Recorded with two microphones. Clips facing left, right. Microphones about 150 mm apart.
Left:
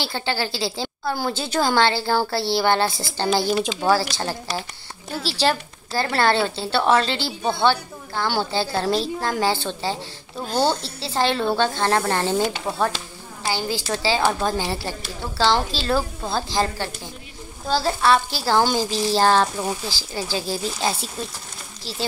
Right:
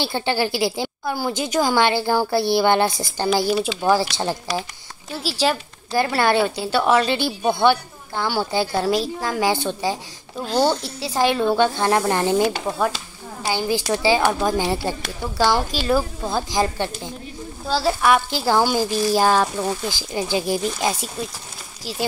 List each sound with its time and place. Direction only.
0.0 s a woman's voice: 20° right (ahead or behind)
4.1 s a woman's voice: 20° right (ahead or behind)
5.2 s a woman's voice: 10° right (ahead or behind)
17.6 s a woman's voice: 5° right (ahead or behind)
19.9 s a woman's voice: 20° right (ahead or behind)